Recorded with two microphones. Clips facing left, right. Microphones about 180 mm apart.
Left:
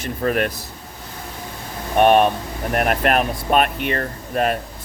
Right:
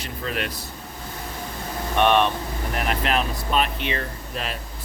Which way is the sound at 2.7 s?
55° left (ahead or behind).